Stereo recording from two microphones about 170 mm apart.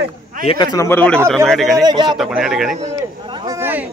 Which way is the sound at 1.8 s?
25° right (ahead or behind).